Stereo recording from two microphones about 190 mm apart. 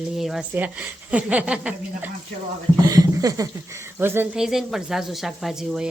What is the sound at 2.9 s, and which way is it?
A woman's voice, 20° right (ahead or behind).